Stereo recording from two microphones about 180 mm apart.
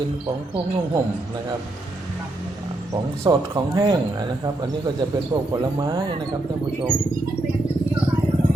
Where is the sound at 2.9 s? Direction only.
20° right (ahead or behind).